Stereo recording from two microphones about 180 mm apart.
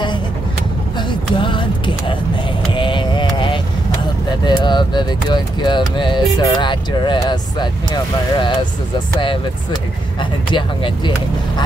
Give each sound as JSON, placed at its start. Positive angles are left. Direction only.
{"t": 0.9, "sound": "music", "side_deg": 25}
{"t": 2.7, "sound": "vehicle", "side_deg": 25}
{"t": 4.5, "sound": "speech", "side_deg": 25}